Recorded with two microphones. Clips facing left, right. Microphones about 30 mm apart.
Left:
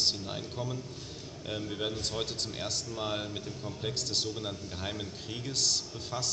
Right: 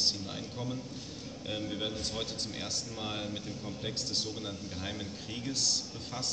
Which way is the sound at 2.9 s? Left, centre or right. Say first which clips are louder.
Left 3 dB; centre.